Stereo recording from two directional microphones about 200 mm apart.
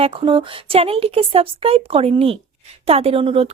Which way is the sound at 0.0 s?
25° right (ahead or behind).